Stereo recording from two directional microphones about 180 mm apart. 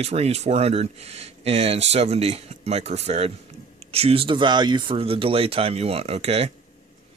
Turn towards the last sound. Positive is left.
turn(degrees=-35)  # may be behind; listen again after turning